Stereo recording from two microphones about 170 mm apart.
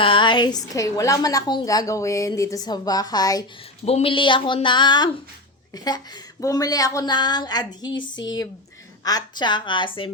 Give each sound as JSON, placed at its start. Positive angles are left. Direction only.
{"t": 0.0, "sound": "a woman's voice", "side_deg": 30}
{"t": 3.8, "sound": "a woman's voice", "side_deg": 35}